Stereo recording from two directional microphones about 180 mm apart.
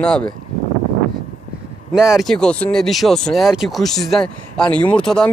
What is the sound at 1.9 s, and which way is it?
Speech, 5° right (ahead or behind).